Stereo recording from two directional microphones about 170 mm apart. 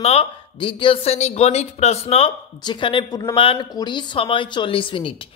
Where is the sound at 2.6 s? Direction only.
30° left (ahead or behind).